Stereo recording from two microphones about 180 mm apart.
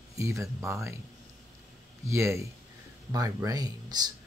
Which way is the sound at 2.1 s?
15° right (ahead or behind).